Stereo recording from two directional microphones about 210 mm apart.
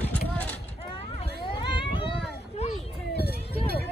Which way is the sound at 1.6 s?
20° left (ahead or behind).